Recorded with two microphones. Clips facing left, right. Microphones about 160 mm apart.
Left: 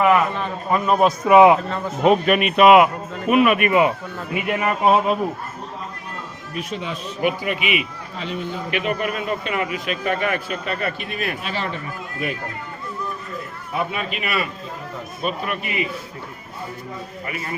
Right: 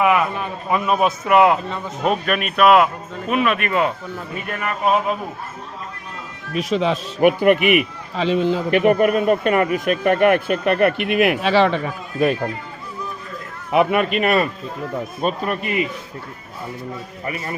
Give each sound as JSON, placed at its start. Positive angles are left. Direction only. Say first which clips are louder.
{"t": 0.0, "sound": "a man's voice", "louder": "left 1 dB", "side_deg": -5}
{"t": 1.3, "sound": "speech", "louder": "left 3 dB", "side_deg": 15}
{"t": 1.7, "sound": "speech", "louder": "left 4 dB", "side_deg": 5}
{"t": 6.5, "sound": "speech", "louder": "right 9 dB", "side_deg": -90}
{"t": 7.2, "sound": "speech", "louder": "right 9 dB", "side_deg": -55}
{"t": 8.8, "sound": "speech", "louder": "right 10 dB", "side_deg": -50}
{"t": 13.7, "sound": "a man's voice", "louder": "right 9 dB", "side_deg": -70}
{"t": 17.2, "sound": "a man's voice", "louder": "right 4 dB", "side_deg": -35}